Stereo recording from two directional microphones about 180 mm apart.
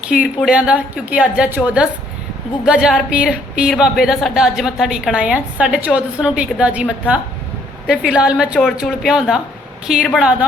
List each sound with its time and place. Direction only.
0.1 s a woman's voice: 5° right (ahead or behind)